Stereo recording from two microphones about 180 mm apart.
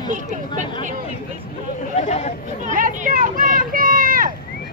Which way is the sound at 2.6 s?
45° right (ahead or behind).